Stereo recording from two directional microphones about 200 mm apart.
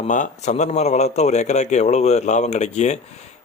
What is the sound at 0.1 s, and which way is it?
A man's voice, 35° left (ahead or behind).